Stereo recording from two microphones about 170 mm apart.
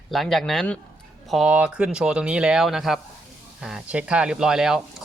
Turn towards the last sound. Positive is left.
turn(degrees=-5)  # may be behind; listen again after turning